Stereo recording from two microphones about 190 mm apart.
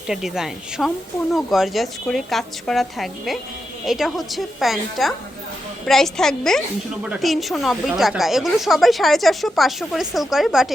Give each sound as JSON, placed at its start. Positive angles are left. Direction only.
{"t": 0.1, "sound": "speech", "side_deg": 0}